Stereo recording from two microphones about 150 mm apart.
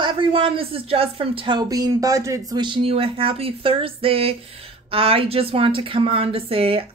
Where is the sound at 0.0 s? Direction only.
30° right (ahead or behind).